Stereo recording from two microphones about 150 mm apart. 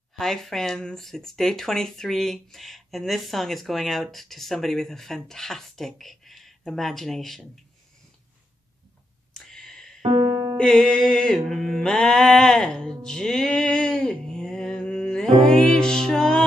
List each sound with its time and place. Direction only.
0.2 s speech: centre (ahead or behind)
9.3 s a sound: 5° left (ahead or behind)
10.0 s music: 35° right (ahead or behind)
10.3 s music: 20° right (ahead or behind)
10.6 s mantra: 5° left (ahead or behind)
15.4 s speech: 5° left (ahead or behind)